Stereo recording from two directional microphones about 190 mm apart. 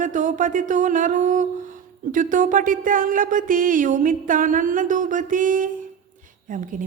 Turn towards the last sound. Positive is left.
turn(degrees=-45)  # may be behind; listen again after turning